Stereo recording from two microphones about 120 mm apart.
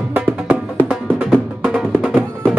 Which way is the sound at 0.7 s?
5° left (ahead or behind).